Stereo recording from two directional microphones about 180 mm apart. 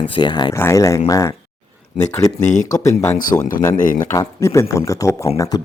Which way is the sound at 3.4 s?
50° left (ahead or behind).